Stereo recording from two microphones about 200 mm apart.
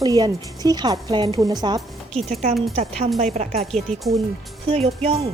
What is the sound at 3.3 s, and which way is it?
Speech, 30° right (ahead or behind).